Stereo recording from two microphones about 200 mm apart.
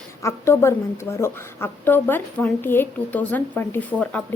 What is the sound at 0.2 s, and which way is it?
A woman's voice, 15° left (ahead or behind).